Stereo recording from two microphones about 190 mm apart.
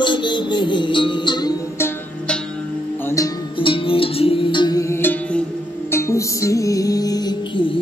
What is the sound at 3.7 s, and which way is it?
Music, 30° left (ahead or behind).